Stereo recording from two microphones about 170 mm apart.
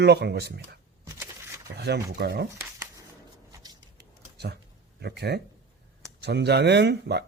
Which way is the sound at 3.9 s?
75° right (ahead or behind).